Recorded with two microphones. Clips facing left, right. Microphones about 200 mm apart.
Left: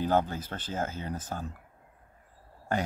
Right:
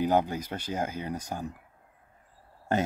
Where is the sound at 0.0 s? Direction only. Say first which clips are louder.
Right 2 dB; 15° right (ahead or behind).